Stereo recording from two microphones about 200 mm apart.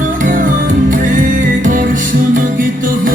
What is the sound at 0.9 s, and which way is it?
Music, 40° right (ahead or behind).